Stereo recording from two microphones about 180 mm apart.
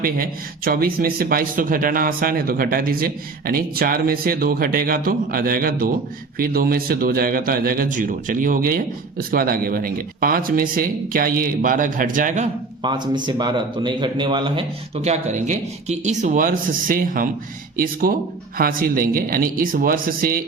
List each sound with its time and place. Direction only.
0.0 s speech: 55° right (ahead or behind)
12.8 s speech: 25° right (ahead or behind)
15.0 s speech: 40° right (ahead or behind)